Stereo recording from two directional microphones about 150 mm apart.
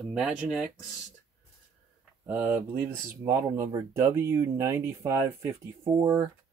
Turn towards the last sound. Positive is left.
turn(degrees=-20)  # may be behind; listen again after turning